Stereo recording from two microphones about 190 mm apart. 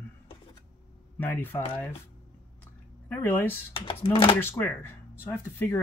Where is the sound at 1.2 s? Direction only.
10° left (ahead or behind).